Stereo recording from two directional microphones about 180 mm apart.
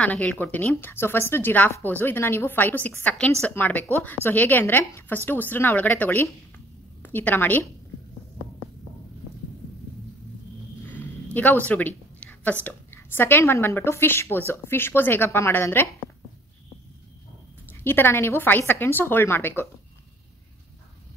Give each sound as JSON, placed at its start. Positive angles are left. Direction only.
{"t": 0.0, "sound": "a woman's voice", "side_deg": 10}
{"t": 10.9, "sound": "a sound", "side_deg": 10}
{"t": 12.6, "sound": "a woman's voice", "side_deg": 10}
{"t": 17.8, "sound": "a woman's voice", "side_deg": 10}